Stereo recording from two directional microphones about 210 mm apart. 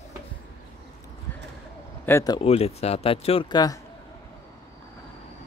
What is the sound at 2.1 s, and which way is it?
Speech, 15° left (ahead or behind).